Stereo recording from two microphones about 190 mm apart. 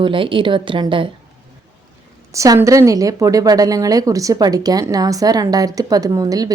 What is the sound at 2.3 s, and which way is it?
A woman's voice, 15° right (ahead or behind).